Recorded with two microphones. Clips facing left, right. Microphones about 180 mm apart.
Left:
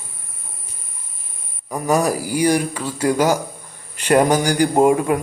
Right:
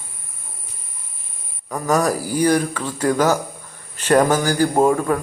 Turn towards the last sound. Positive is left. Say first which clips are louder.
# left 2 dB
turn(degrees=15)  # may be behind; listen again after turning